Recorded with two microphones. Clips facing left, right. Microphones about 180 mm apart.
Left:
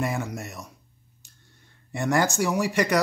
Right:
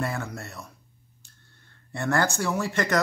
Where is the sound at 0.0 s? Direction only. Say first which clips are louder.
Left 2 dB; 20° left (ahead or behind).